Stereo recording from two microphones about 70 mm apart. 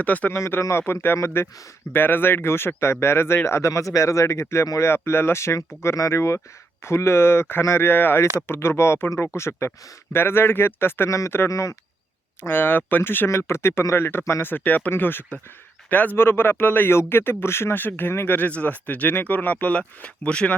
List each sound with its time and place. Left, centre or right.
0.0 s speech: left
0.3 s speech: left
11.5 s speech: left
12.4 s speech: left
18.3 s speech: left